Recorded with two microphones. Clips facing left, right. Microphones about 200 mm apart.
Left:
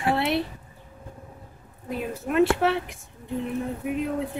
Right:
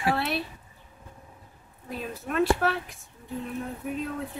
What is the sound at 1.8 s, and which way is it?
Speech, 15° left (ahead or behind).